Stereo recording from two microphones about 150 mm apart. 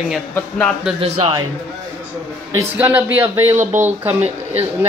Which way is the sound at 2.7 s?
10° right (ahead or behind).